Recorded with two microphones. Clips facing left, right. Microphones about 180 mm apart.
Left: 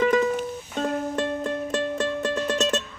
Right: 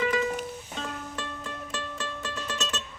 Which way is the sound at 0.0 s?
45° left (ahead or behind).